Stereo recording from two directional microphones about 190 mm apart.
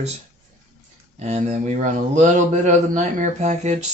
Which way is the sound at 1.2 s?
35° right (ahead or behind).